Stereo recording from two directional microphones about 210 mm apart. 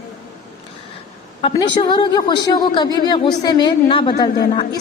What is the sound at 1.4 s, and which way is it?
A woman's voice, 25° left (ahead or behind).